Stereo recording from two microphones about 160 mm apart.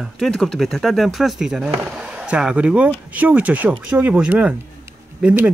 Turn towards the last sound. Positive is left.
turn(degrees=-5)  # may be behind; listen again after turning